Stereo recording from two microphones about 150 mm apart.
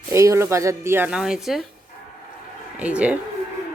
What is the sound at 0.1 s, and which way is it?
A woman's voice, 20° right (ahead or behind).